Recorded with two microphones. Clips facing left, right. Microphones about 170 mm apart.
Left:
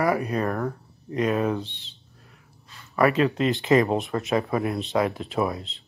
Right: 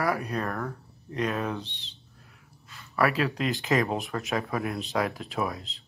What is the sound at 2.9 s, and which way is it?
Speech, centre (ahead or behind).